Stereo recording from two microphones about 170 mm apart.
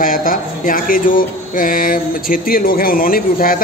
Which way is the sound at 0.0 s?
55° left (ahead or behind).